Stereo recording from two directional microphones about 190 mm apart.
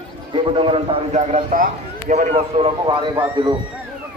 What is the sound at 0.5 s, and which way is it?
A man's voice, 30° right (ahead or behind).